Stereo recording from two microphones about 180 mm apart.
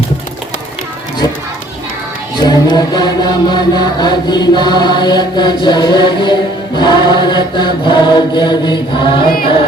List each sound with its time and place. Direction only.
2.4 s chant: 25° left (ahead or behind)